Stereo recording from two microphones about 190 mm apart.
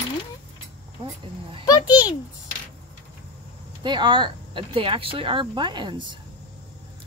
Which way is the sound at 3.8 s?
25° right (ahead or behind).